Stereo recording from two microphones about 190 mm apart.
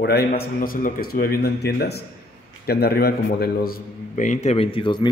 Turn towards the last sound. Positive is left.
turn(degrees=25)  # may be behind; listen again after turning